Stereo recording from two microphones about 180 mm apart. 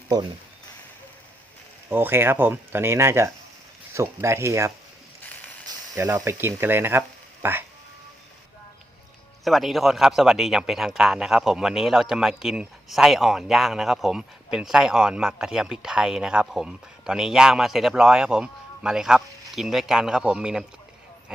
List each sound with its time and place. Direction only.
1.9 s speech: 10° right (ahead or behind)
9.4 s a man's voice: centre (ahead or behind)